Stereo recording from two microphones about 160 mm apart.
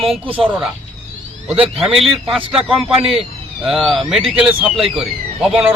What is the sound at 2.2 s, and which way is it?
Speech, centre (ahead or behind).